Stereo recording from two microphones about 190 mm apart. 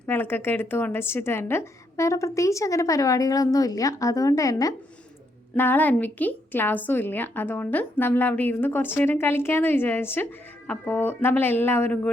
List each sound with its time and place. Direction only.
0.0 s speech: 10° left (ahead or behind)